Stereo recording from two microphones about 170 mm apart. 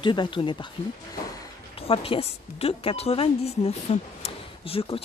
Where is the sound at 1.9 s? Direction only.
35° left (ahead or behind).